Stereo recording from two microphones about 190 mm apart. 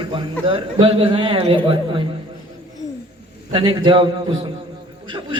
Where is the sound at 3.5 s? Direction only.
30° right (ahead or behind).